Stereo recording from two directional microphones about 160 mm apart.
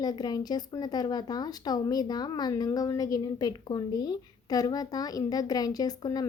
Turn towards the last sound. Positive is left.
turn(degrees=25)  # may be behind; listen again after turning